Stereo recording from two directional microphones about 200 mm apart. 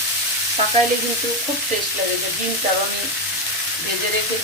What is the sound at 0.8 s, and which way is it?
Frying, 30° right (ahead or behind).